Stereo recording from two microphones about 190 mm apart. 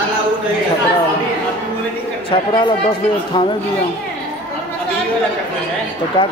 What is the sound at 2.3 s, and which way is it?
Speech, 25° left (ahead or behind).